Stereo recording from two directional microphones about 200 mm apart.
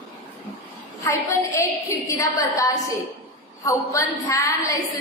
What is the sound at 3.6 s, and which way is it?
A woman's voice, 15° left (ahead or behind).